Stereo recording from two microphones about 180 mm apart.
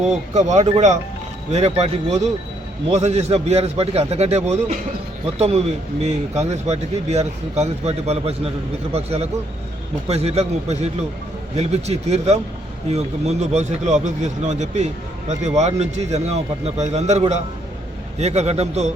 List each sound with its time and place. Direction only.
0.3 s speech: 40° right (ahead or behind)